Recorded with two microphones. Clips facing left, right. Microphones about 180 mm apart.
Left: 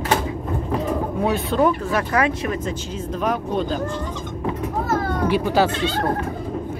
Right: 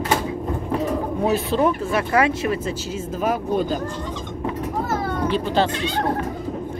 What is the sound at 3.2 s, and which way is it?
Speech, 5° right (ahead or behind).